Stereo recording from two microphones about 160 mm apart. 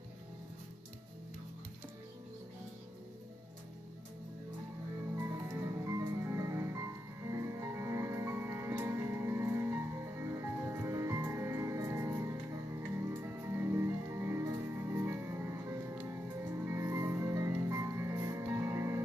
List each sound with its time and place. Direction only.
5.1 s music: 20° right (ahead or behind)